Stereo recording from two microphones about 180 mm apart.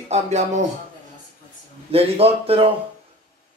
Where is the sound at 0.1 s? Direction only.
40° right (ahead or behind).